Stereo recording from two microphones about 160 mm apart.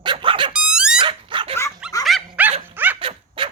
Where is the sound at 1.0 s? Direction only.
35° right (ahead or behind).